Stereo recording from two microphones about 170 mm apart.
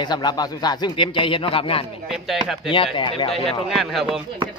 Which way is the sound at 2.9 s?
30° left (ahead or behind).